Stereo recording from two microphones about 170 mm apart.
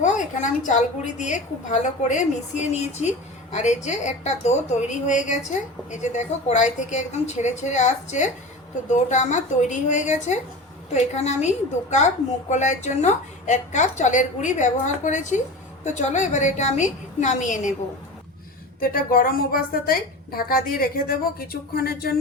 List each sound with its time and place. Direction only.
0.0 s a woman's voice: 45° left (ahead or behind)
18.8 s a woman's voice: 60° left (ahead or behind)